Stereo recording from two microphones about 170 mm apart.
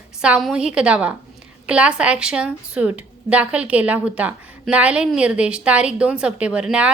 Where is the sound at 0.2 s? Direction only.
5° right (ahead or behind).